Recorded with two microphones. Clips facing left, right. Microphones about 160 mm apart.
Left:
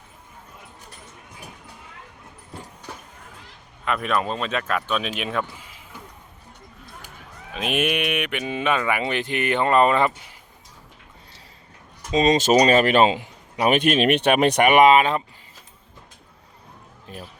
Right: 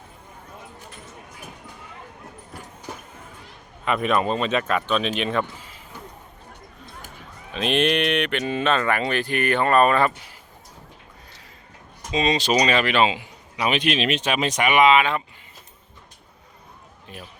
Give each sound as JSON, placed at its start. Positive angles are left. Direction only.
{"t": 3.8, "sound": "speech", "side_deg": 0}
{"t": 7.5, "sound": "speech", "side_deg": 10}
{"t": 12.1, "sound": "a man's voice", "side_deg": 45}
{"t": 17.1, "sound": "speech", "side_deg": 40}